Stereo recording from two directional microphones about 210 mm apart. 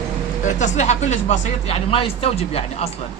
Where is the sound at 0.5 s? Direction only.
35° left (ahead or behind).